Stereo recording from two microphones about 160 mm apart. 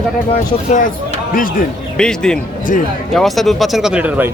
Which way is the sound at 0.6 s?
50° left (ahead or behind).